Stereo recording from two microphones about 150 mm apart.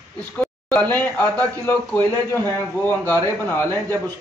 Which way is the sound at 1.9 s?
15° left (ahead or behind).